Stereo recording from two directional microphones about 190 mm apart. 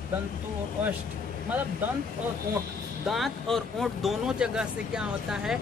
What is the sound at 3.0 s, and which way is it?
Speech, centre (ahead or behind).